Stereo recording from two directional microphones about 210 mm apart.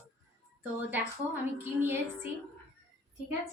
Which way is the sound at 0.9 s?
10° right (ahead or behind).